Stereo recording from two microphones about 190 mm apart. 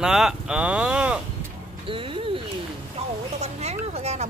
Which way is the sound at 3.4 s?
35° right (ahead or behind).